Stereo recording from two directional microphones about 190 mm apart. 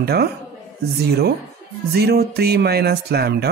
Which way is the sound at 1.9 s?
60° right (ahead or behind).